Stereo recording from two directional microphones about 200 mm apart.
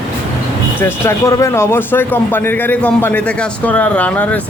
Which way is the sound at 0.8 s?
15° left (ahead or behind).